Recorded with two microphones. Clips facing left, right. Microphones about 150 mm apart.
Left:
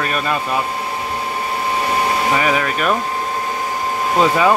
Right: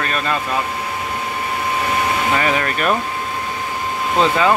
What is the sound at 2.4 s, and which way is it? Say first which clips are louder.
Speech: left 1 dB; 5° left (ahead or behind).